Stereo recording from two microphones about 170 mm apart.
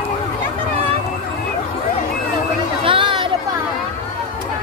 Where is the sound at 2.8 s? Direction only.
30° right (ahead or behind).